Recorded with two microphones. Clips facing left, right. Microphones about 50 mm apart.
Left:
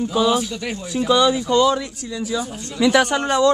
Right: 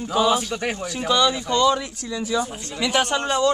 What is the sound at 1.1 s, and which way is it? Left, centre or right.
Speech, centre.